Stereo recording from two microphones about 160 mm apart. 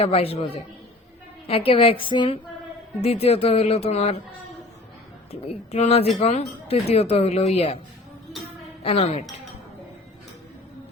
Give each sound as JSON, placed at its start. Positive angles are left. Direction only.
{"t": 0.0, "sound": "speech", "side_deg": 35}
{"t": 5.3, "sound": "speech", "side_deg": 40}
{"t": 8.8, "sound": "speech", "side_deg": 40}